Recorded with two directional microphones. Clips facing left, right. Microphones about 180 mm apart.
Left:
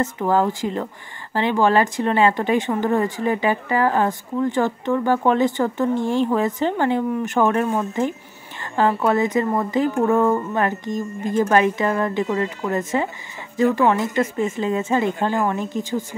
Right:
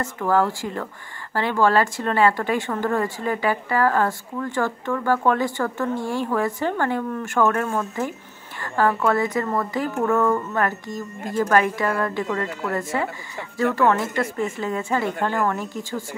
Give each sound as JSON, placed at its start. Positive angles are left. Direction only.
{"t": 0.0, "sound": "speech", "side_deg": 20}